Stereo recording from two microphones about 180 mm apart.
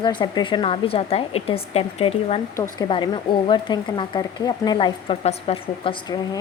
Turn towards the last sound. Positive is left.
turn(degrees=25)  # may be behind; listen again after turning